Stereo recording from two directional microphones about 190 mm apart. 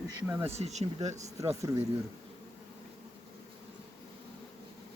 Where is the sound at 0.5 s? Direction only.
35° right (ahead or behind).